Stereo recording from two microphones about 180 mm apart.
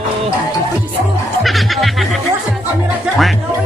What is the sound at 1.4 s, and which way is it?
Music, centre (ahead or behind).